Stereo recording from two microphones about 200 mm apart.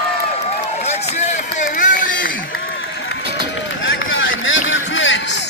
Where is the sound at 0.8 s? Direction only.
35° left (ahead or behind).